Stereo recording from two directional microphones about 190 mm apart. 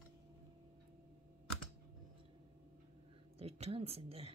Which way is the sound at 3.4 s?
35° right (ahead or behind).